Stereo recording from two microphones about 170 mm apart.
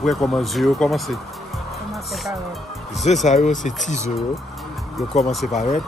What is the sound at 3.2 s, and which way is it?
Speech, 45° left (ahead or behind).